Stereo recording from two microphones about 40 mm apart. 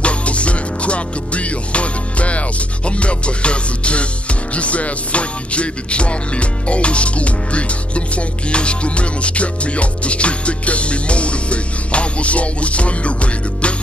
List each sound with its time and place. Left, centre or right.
0.0 s music: left